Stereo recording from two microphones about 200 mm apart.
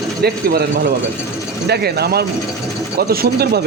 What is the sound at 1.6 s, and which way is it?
Speech, 55° right (ahead or behind).